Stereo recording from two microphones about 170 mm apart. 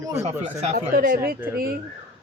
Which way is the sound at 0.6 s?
40° right (ahead or behind).